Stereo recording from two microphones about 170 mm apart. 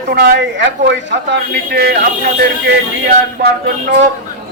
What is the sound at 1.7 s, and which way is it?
Speech, 70° right (ahead or behind).